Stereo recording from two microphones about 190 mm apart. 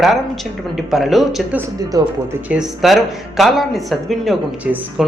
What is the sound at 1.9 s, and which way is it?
Speech, 20° right (ahead or behind).